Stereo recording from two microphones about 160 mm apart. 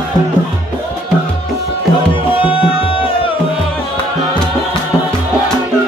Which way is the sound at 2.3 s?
35° left (ahead or behind).